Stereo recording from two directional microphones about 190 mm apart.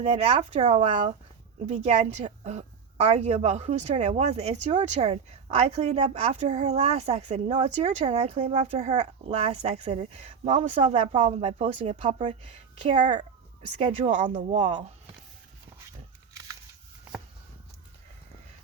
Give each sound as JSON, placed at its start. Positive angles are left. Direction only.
{"t": 0.0, "sound": "a woman's voice", "side_deg": -35}